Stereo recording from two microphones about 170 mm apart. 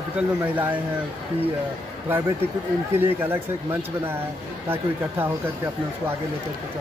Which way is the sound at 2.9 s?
15° right (ahead or behind).